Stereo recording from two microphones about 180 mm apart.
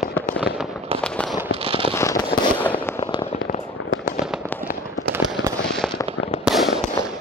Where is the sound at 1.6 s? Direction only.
30° right (ahead or behind).